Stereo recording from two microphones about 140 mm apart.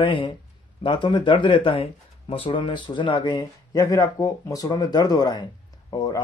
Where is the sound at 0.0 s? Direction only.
35° left (ahead or behind).